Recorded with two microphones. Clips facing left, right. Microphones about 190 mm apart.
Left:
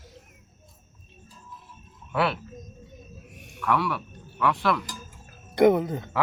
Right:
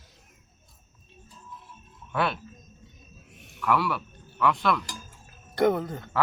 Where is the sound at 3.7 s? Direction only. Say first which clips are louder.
Even; centre (ahead or behind).